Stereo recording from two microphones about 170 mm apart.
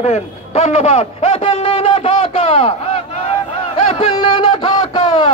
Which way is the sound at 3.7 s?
35° left (ahead or behind).